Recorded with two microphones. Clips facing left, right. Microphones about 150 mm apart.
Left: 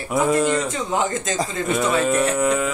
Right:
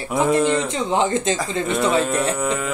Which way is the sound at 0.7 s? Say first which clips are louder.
Right 3 dB; 25° right (ahead or behind).